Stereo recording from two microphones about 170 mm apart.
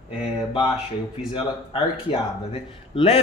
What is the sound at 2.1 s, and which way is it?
A man's voice, 35° left (ahead or behind).